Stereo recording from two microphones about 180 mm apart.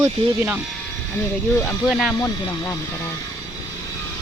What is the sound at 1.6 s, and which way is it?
Speech, centre (ahead or behind).